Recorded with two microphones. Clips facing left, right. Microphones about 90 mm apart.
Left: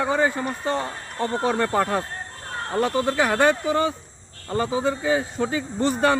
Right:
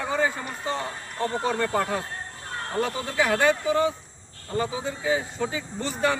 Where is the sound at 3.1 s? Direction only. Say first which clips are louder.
Left 1 dB; 60° left (ahead or behind).